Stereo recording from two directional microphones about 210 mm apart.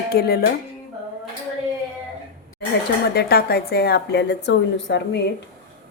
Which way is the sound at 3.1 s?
50° left (ahead or behind).